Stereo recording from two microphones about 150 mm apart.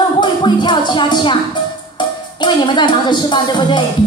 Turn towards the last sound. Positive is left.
turn(degrees=30)  # may be behind; listen again after turning